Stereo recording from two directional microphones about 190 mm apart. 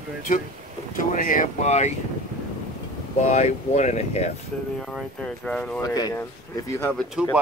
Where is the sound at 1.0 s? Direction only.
45° left (ahead or behind).